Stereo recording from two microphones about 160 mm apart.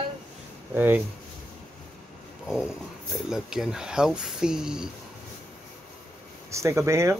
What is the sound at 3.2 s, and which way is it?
Speech, 5° right (ahead or behind).